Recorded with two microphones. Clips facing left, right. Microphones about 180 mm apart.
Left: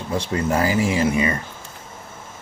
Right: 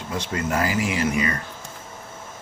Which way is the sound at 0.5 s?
30° left (ahead or behind).